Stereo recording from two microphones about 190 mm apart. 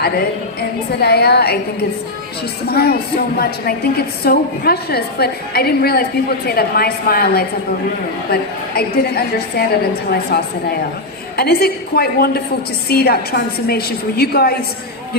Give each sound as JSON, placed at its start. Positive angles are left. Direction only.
{"t": 0.9, "sound": "a woman's voice", "side_deg": 55}
{"t": 2.6, "sound": "a woman's voice", "side_deg": 55}